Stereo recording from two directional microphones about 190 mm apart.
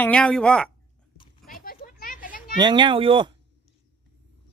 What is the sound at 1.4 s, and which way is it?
Children playing, 50° left (ahead or behind).